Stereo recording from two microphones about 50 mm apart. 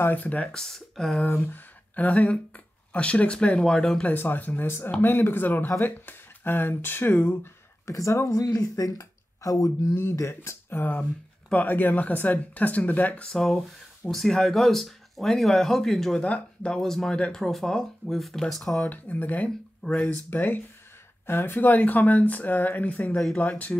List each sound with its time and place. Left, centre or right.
0.0 s speech: left
0.5 s speech: centre
1.4 s speech: left; by 4.0 s centre
4.1 s speech: left
4.6 s speech: left
5.0 s speech: left
7.8 s speech: left
9.4 s speech: left
10.8 s speech: left
13.3 s speech: centre
16.2 s speech: left
16.7 s speech: centre
18.9 s speech: left